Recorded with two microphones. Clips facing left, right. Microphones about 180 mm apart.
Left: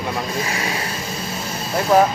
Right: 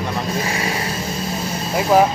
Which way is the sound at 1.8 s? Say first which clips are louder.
Right 1 dB; 10° right (ahead or behind).